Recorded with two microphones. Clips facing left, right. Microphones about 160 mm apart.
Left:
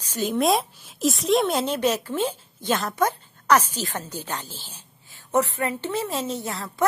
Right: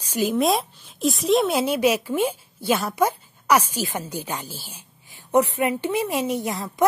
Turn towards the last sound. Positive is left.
turn(degrees=-15)  # may be behind; listen again after turning